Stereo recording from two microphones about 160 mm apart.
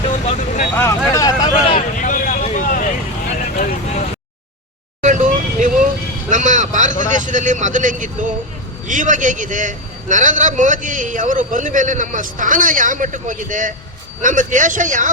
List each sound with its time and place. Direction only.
0.3 s speech: 45° left (ahead or behind)
0.8 s vehicle: 20° left (ahead or behind)
2.0 s vehicle: 55° left (ahead or behind)
5.0 s vehicle: 50° right (ahead or behind)
7.0 s a man's voice: 50° right (ahead or behind)